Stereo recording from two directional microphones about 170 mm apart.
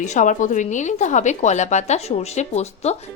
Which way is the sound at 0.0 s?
45° left (ahead or behind).